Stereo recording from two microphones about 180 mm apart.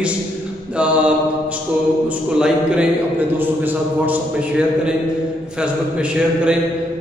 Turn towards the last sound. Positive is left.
turn(degrees=-5)  # may be behind; listen again after turning